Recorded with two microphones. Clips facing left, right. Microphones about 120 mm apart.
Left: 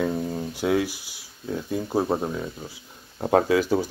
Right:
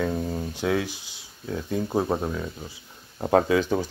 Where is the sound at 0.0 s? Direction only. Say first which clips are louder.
Left 1 dB; centre (ahead or behind).